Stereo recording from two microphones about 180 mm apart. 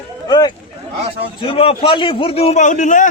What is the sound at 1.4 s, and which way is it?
A man's voice, 30° left (ahead or behind).